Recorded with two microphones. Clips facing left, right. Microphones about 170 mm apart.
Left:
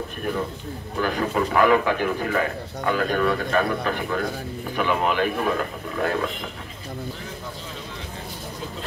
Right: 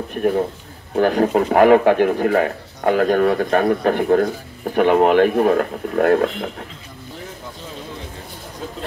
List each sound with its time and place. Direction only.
0.9 s speech: 55° right (ahead or behind)
5.3 s speech: 45° right (ahead or behind)